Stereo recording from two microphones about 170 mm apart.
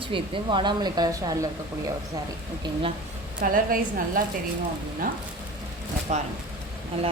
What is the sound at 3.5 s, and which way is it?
Speech, 55° right (ahead or behind).